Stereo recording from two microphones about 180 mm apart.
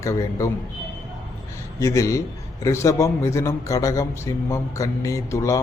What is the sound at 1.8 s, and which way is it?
A man's voice, 15° left (ahead or behind).